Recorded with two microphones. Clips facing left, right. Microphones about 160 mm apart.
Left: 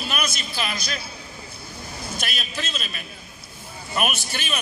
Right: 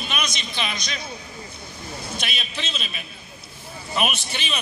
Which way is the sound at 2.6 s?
Centre (ahead or behind).